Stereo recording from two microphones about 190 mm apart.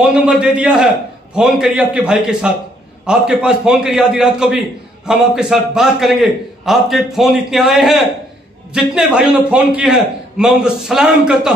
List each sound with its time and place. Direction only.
0.1 s a man's voice: 5° right (ahead or behind)